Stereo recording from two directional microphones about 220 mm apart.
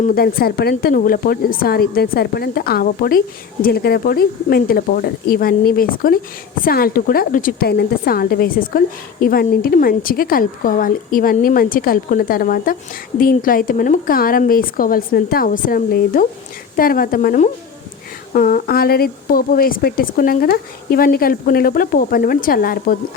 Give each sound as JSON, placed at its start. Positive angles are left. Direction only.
{"t": 0.0, "sound": "a woman's voice", "side_deg": 40}